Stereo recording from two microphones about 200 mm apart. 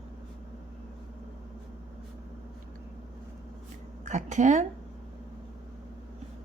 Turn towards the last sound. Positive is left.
turn(degrees=-35)  # may be behind; listen again after turning